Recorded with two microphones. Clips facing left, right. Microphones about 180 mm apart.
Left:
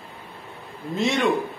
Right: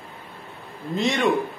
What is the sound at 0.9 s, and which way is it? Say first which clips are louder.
Speech: even; 5° left (ahead or behind).